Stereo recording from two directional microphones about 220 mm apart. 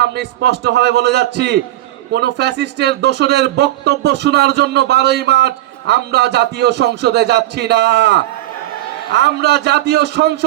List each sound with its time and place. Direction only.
0.0 s a man's voice: 50° right (ahead or behind)